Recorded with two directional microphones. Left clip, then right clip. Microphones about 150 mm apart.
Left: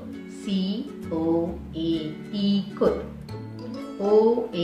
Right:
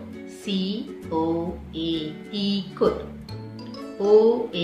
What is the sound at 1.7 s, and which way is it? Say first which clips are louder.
A woman's voice: even; 20° right (ahead or behind).